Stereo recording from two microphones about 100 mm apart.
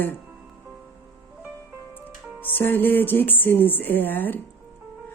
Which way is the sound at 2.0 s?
20° left (ahead or behind).